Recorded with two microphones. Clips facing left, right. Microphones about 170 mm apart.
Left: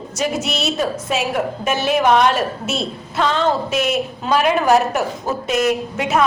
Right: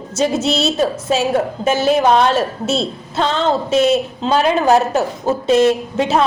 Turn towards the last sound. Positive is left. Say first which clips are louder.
# right 3 dB
turn(degrees=-30)  # may be behind; listen again after turning